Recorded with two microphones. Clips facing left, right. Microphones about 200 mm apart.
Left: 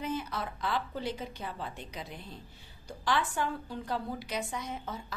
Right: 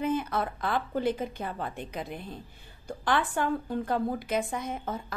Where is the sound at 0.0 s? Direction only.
55° right (ahead or behind).